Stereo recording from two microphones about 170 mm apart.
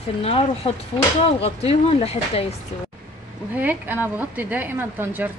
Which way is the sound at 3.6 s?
10° right (ahead or behind).